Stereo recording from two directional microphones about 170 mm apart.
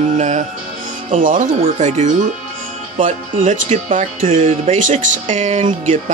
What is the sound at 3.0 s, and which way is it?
Speech, 35° right (ahead or behind).